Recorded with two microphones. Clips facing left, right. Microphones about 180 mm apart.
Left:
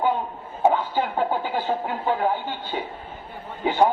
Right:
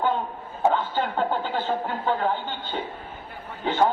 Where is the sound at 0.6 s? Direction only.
15° left (ahead or behind).